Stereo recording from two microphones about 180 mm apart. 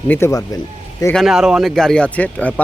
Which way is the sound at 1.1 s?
Centre (ahead or behind).